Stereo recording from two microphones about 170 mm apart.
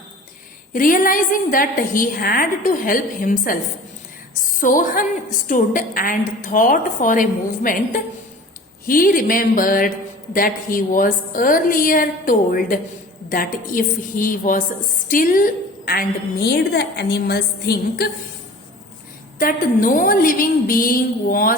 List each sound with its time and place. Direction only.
0.7 s a woman's voice: 55° left (ahead or behind); by 18.1 s 70° left (ahead or behind)
19.4 s a woman's voice: 55° left (ahead or behind)